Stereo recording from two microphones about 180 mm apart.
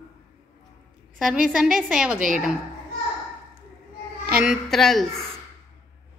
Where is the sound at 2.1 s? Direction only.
45° right (ahead or behind).